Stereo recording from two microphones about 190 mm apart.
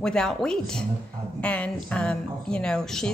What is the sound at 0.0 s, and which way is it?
A woman's voice, 5° left (ahead or behind).